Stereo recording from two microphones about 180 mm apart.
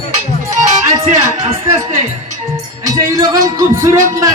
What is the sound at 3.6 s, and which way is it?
Music, 15° right (ahead or behind).